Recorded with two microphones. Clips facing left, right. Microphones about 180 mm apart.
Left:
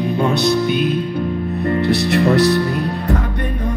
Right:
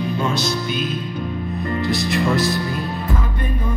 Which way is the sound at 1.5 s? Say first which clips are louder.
Left 5 dB; 65° left (ahead or behind).